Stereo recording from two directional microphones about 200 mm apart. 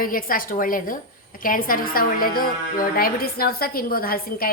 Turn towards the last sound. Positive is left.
turn(degrees=50)  # may be behind; listen again after turning